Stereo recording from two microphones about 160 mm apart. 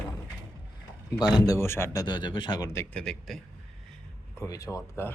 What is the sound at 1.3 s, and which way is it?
Speech, 20° left (ahead or behind).